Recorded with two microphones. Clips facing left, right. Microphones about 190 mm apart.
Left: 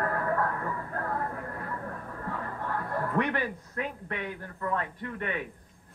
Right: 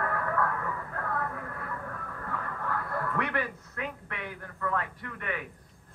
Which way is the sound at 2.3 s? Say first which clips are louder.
Left 1 dB; 30° left (ahead or behind).